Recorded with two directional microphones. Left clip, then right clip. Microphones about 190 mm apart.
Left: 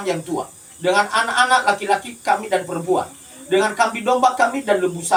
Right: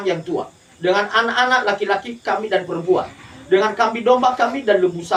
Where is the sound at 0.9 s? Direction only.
30° left (ahead or behind).